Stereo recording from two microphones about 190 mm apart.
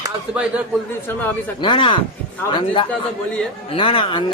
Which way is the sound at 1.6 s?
25° left (ahead or behind).